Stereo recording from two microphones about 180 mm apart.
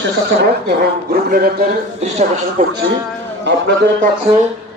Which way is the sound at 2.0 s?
40° right (ahead or behind).